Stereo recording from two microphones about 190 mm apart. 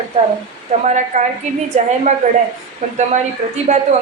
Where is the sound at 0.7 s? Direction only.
40° right (ahead or behind).